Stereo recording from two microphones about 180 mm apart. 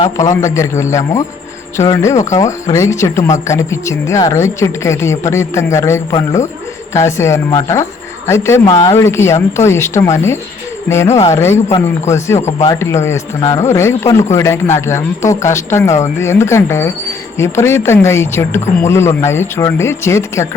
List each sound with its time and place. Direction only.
0.0 s speech: 20° left (ahead or behind)
12.4 s speech: 40° left (ahead or behind)
12.6 s speech: 15° left (ahead or behind)